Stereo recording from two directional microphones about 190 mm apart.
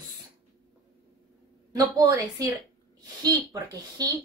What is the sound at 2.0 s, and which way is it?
Speech, 20° right (ahead or behind).